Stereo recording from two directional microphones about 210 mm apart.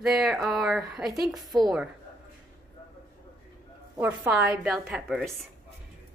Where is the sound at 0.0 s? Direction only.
Centre (ahead or behind).